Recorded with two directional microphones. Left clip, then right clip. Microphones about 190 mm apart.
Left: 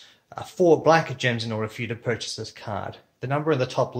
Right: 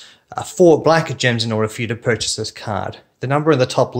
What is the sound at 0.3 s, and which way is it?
Speech, 30° right (ahead or behind).